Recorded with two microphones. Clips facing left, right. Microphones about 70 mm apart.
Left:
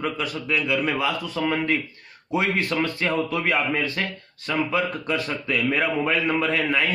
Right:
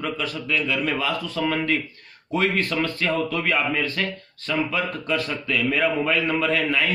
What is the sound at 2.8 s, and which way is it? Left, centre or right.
A man's voice, centre.